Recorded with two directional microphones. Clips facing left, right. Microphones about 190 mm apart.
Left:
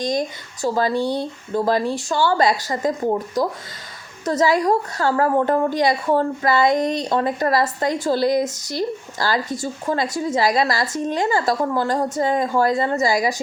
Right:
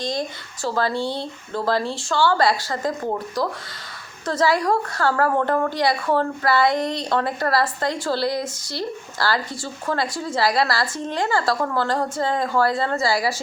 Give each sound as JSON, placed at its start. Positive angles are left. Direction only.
{"t": 0.0, "sound": "a woman's voice", "side_deg": 20}